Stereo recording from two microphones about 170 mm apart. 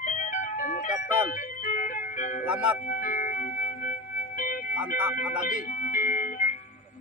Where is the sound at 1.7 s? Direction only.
50° left (ahead or behind).